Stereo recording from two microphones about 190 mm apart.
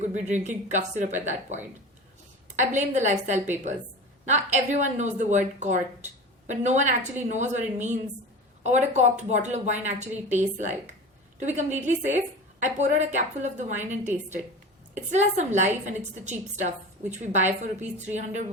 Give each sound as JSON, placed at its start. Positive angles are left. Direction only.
{"t": 0.3, "sound": "a woman's voice", "side_deg": -40}
{"t": 14.9, "sound": "a woman's voice", "side_deg": -35}